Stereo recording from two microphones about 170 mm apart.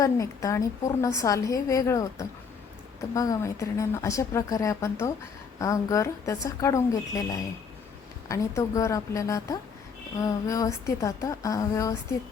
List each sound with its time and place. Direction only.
0.0 s a woman's voice: 20° left (ahead or behind)
8.3 s a woman's voice: 20° left (ahead or behind)